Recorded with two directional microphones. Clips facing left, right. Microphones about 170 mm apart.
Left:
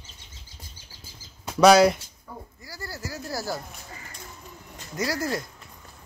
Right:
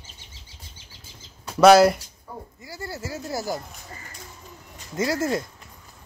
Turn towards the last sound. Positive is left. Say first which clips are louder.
# right 4 dB
turn(degrees=-25)  # may be behind; listen again after turning